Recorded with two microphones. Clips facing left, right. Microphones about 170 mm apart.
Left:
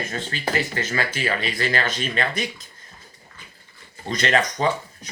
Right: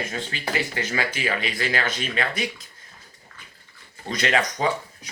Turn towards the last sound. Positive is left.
turn(degrees=-10)  # may be behind; listen again after turning